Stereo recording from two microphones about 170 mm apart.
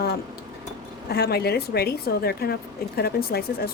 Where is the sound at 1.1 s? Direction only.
70° left (ahead or behind).